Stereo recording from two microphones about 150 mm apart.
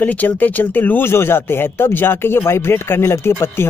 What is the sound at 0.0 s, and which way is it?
Speech, 10° left (ahead or behind).